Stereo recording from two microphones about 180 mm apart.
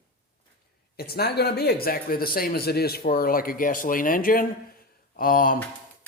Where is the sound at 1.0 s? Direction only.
60° left (ahead or behind).